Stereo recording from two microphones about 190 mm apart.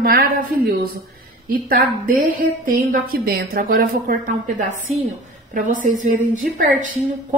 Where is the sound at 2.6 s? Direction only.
50° right (ahead or behind).